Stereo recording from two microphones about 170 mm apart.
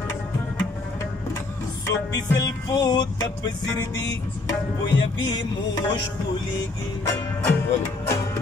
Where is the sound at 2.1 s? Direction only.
20° left (ahead or behind).